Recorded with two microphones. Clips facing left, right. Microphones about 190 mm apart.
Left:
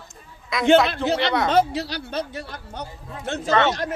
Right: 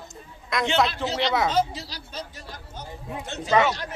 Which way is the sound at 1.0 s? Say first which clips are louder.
Left 3 dB; 60° left (ahead or behind).